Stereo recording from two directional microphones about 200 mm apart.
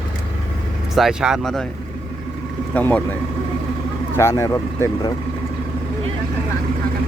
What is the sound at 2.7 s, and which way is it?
Speech, 10° left (ahead or behind).